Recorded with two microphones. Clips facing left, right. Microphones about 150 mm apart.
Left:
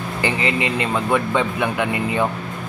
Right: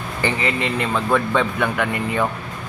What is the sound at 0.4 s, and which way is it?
Speech, 20° left (ahead or behind).